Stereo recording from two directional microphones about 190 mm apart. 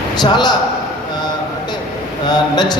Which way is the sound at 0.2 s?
20° left (ahead or behind).